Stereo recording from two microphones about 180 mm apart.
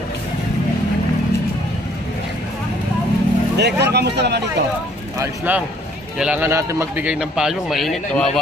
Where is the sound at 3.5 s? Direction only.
70° right (ahead or behind).